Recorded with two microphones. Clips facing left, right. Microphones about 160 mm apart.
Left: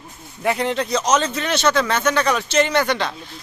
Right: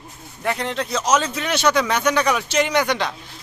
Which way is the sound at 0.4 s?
5° left (ahead or behind).